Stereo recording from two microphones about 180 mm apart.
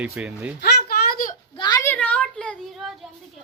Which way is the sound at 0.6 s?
60° left (ahead or behind).